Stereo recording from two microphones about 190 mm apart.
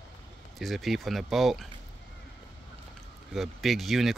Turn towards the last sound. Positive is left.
turn(degrees=0)  # may be behind; listen again after turning